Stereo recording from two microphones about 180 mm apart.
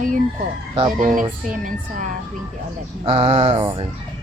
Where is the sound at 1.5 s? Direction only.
45° right (ahead or behind).